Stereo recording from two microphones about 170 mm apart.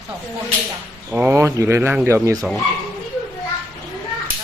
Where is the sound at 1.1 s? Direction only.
10° right (ahead or behind).